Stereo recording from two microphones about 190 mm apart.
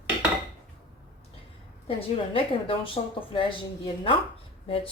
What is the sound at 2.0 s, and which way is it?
Speech, 30° left (ahead or behind).